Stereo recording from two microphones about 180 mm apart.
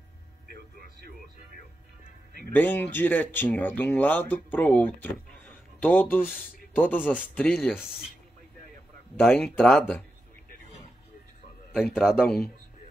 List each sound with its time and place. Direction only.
0.5 s a sound: 60° right (ahead or behind)
2.5 s speech: 10° left (ahead or behind)
9.3 s speech: centre (ahead or behind)
11.9 s speech: 5° right (ahead or behind)